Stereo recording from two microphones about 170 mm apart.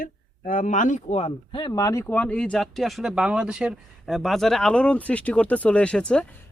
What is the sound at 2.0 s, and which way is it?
Speech, 10° left (ahead or behind).